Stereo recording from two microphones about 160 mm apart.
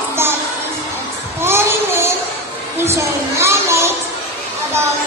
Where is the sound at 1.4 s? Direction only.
15° right (ahead or behind).